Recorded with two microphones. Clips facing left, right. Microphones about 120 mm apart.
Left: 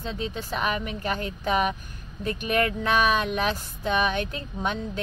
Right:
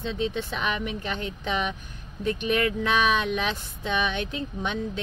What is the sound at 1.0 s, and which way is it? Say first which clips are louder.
Speech: left 3 dB; 45° left (ahead or behind).